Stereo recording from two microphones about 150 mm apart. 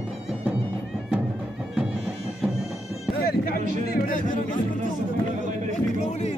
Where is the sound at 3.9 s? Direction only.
65° left (ahead or behind).